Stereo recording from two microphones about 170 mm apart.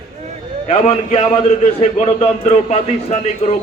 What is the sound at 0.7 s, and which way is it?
A man's voice, 35° left (ahead or behind).